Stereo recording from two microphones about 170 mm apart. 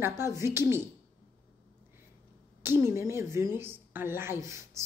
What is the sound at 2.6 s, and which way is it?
A woman's voice, 15° right (ahead or behind).